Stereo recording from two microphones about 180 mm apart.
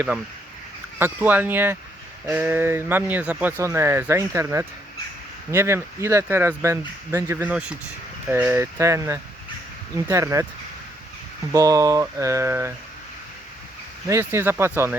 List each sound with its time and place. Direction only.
0.9 s speech: 10° right (ahead or behind)
7.5 s speech: 5° right (ahead or behind)
11.5 s speech: 20° right (ahead or behind)
14.1 s speech: 15° right (ahead or behind)